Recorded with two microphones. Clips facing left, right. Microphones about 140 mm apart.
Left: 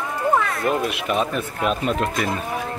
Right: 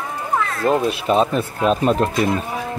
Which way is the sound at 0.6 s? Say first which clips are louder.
Right 4 dB; 30° right (ahead or behind).